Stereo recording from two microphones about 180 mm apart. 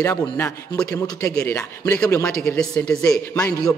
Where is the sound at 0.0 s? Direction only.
10° left (ahead or behind).